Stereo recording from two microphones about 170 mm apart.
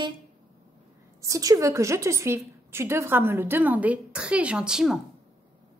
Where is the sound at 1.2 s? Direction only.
20° right (ahead or behind); by 4.9 s 5° right (ahead or behind).